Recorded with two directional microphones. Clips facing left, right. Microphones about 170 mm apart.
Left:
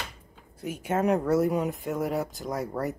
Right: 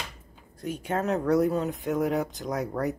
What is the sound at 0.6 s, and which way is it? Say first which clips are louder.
Speech: left 2 dB; 10° left (ahead or behind).